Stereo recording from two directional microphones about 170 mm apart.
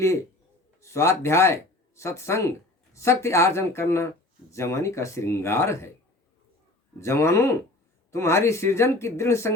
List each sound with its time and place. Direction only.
0.8 s speech: 15° left (ahead or behind)
7.0 s speech: 15° left (ahead or behind)